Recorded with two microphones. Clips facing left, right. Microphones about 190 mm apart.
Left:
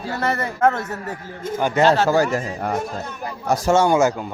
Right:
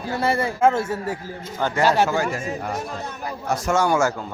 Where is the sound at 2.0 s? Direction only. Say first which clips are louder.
Left 5 dB; 40° left (ahead or behind).